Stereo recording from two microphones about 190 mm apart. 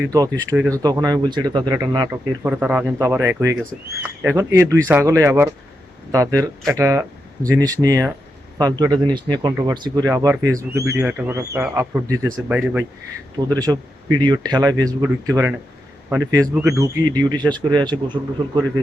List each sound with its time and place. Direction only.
0.0 s speech: 15° right (ahead or behind)
2.5 s speech: 10° right (ahead or behind)